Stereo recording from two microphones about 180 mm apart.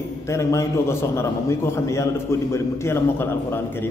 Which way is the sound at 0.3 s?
15° left (ahead or behind).